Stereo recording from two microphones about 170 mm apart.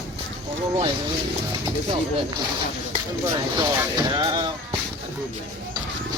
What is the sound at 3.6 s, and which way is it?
Speech, 25° right (ahead or behind).